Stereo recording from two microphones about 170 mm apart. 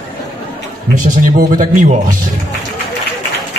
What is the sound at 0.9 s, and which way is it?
Speech, 50° right (ahead or behind).